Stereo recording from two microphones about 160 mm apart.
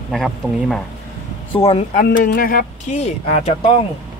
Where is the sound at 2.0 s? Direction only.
65° left (ahead or behind).